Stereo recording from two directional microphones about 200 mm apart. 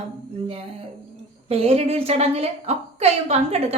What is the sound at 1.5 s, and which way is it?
A woman's voice, 30° right (ahead or behind).